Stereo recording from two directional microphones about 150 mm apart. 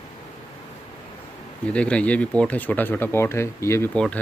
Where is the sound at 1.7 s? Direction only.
10° left (ahead or behind).